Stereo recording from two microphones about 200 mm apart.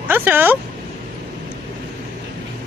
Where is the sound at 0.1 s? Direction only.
10° right (ahead or behind).